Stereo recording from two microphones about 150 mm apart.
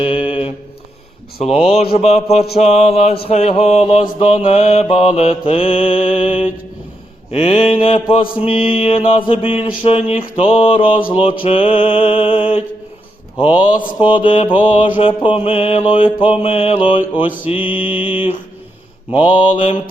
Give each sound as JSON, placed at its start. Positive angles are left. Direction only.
{"t": 0.0, "sound": "a sound", "side_deg": 35}
{"t": 1.4, "sound": "a man's voice", "side_deg": 40}
{"t": 3.2, "sound": "mantra", "side_deg": 45}
{"t": 14.0, "sound": "mantra", "side_deg": 35}
{"t": 17.4, "sound": "mantra", "side_deg": -10}
{"t": 19.1, "sound": "mantra", "side_deg": 35}